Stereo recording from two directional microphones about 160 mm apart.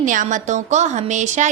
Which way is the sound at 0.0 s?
55° right (ahead or behind).